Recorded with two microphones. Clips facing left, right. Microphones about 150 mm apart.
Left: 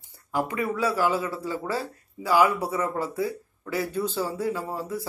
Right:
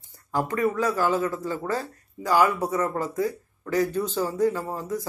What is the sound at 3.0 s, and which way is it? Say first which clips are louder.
Speech: right 1 dB; 45° right (ahead or behind).